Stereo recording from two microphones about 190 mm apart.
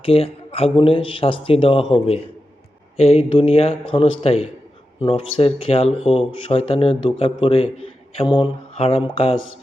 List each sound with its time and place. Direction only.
0.0 s speech: 30° left (ahead or behind)